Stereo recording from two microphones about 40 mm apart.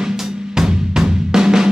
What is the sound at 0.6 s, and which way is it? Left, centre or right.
Drum, centre.